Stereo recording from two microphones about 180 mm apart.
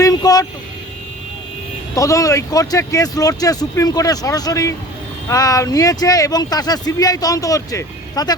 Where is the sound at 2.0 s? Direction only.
20° left (ahead or behind).